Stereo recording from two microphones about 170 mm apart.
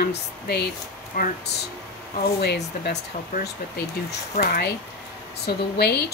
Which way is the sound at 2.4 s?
75° left (ahead or behind).